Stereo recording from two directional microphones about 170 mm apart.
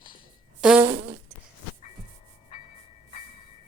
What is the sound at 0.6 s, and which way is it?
Fart, 5° right (ahead or behind).